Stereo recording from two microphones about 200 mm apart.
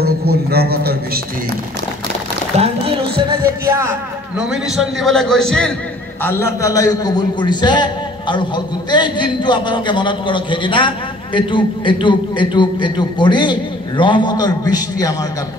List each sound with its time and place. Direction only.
0.0 s a man's voice: 50° right (ahead or behind)
2.5 s music: 30° right (ahead or behind)
3.6 s a man's voice: 10° right (ahead or behind); by 5.7 s 5° left (ahead or behind)
6.2 s a man's voice: 15° left (ahead or behind)